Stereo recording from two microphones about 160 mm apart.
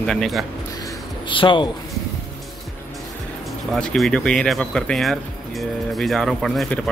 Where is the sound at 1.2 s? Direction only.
30° left (ahead or behind).